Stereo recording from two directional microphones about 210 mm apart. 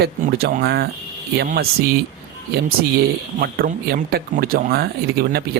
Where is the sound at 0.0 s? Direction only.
45° right (ahead or behind).